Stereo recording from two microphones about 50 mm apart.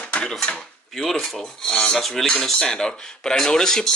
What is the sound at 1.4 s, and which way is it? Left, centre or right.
Speech, centre.